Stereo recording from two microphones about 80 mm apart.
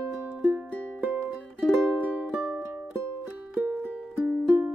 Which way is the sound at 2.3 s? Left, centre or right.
Centre.